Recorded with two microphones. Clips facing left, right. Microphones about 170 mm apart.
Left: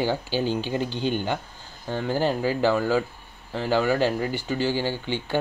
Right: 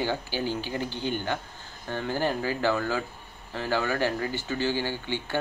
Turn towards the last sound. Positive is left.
turn(degrees=15)  # may be behind; listen again after turning